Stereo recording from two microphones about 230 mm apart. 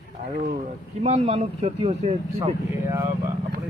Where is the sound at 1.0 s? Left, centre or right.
Right.